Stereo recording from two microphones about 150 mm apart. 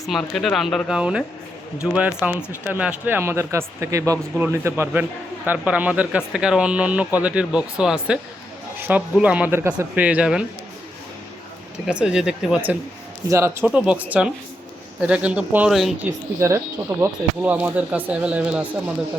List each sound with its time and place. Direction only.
0.0 s speech: centre (ahead or behind)
11.9 s speech: 5° right (ahead or behind)
13.3 s speech: 20° right (ahead or behind)
13.7 s speech: 10° right (ahead or behind)
16.4 s speech: 20° right (ahead or behind)